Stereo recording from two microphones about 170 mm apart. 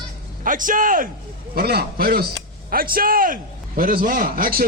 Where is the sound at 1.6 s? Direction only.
65° right (ahead or behind).